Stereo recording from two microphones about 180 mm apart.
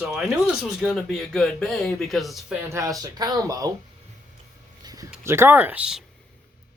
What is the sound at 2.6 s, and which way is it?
Speech, 15° right (ahead or behind).